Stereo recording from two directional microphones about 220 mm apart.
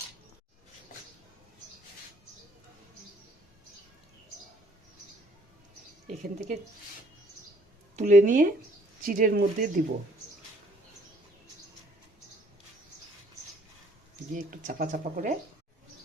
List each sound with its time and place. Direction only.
6.1 s speech: 30° right (ahead or behind)
7.9 s speech: 35° right (ahead or behind)
14.3 s speech: 35° right (ahead or behind)